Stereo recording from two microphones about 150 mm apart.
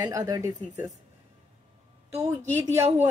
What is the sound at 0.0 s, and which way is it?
Speech, 25° right (ahead or behind).